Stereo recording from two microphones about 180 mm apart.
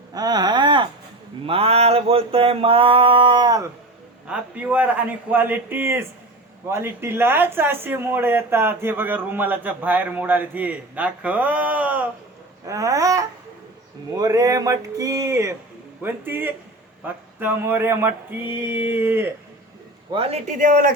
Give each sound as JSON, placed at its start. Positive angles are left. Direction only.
{"t": 0.1, "sound": "a sound", "side_deg": -20}
{"t": 4.3, "sound": "speech", "side_deg": -10}
{"t": 12.6, "sound": "babbling", "side_deg": -20}
{"t": 14.2, "sound": "speech", "side_deg": -20}
{"t": 20.1, "sound": "speech", "side_deg": -35}